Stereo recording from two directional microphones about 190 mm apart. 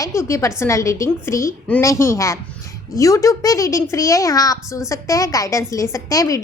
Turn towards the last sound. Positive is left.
turn(degrees=15)  # may be behind; listen again after turning